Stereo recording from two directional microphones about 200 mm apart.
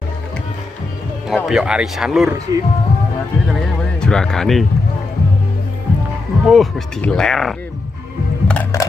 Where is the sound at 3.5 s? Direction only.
5° left (ahead or behind).